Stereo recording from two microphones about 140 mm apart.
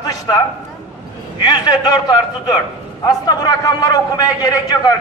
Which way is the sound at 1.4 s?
30° left (ahead or behind).